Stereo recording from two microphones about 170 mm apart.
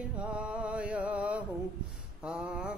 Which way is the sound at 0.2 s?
5° right (ahead or behind).